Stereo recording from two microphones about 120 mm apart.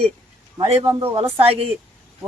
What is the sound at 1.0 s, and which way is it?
Speech, 50° right (ahead or behind).